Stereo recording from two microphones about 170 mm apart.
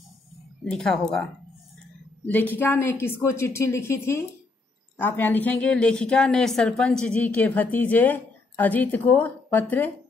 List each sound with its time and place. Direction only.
2.2 s speech: 10° left (ahead or behind)